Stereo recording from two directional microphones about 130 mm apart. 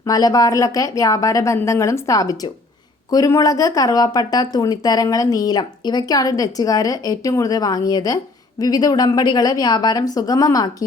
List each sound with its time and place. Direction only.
0.0 s speech: 30° left (ahead or behind)